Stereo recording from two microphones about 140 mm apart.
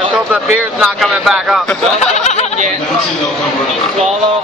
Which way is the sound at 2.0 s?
55° left (ahead or behind).